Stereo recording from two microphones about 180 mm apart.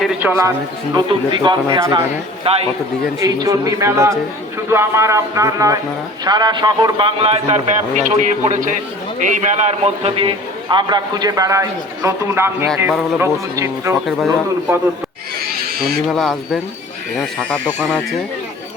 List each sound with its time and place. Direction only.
0.2 s speech: 15° right (ahead or behind)
0.9 s a man's voice: 25° right (ahead or behind)
3.2 s a man's voice: 20° right (ahead or behind)
16.0 s speech: centre (ahead or behind)